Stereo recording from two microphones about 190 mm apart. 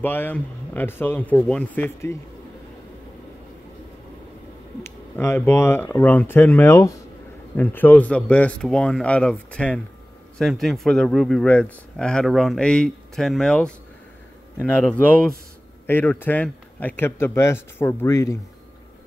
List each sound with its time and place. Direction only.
0.0 s speech: 10° left (ahead or behind)
4.8 s speech: 15° left (ahead or behind)